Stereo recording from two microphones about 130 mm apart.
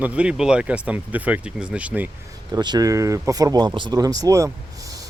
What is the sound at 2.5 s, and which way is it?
Speech, 30° right (ahead or behind).